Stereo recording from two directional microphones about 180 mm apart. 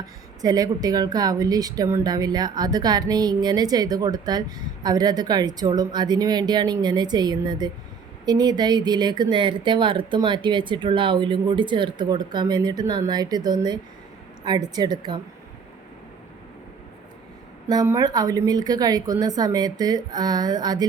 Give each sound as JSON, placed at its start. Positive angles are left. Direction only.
{"t": 0.4, "sound": "a woman's voice", "side_deg": -20}
{"t": 17.7, "sound": "a woman's voice", "side_deg": -20}